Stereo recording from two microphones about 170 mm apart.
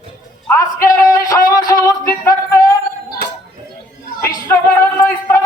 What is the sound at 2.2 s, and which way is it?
Music, 20° left (ahead or behind).